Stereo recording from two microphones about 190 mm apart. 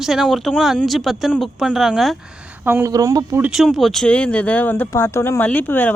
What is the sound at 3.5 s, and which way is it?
Speech, centre (ahead or behind).